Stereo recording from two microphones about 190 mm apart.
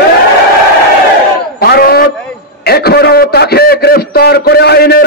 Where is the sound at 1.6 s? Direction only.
55° left (ahead or behind).